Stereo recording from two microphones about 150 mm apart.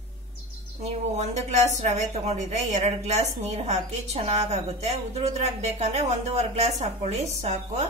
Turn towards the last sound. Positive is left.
turn(degrees=-45)  # may be behind; listen again after turning